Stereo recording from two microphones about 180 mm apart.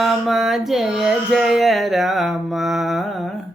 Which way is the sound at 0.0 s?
Centre (ahead or behind).